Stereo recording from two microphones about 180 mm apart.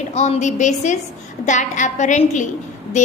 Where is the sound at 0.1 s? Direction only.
40° left (ahead or behind).